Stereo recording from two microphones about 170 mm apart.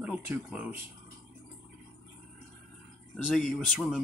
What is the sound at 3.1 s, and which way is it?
Speech, 5° left (ahead or behind).